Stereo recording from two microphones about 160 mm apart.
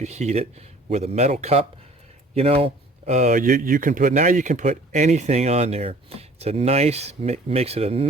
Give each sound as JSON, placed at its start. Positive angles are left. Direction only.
{"t": 0.0, "sound": "speech", "side_deg": -45}